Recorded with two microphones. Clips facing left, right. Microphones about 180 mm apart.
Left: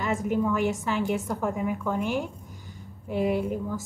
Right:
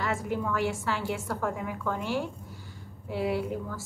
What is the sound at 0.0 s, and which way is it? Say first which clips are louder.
A woman's voice: left 4 dB; 20° left (ahead or behind).